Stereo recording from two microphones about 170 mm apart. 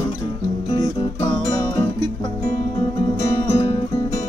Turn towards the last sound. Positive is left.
turn(degrees=35)  # may be behind; listen again after turning